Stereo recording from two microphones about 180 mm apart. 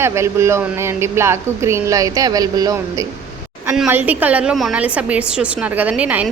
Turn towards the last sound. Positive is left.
turn(degrees=-10)  # may be behind; listen again after turning